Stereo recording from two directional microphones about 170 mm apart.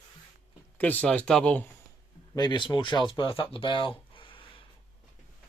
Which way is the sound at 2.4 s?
25° left (ahead or behind).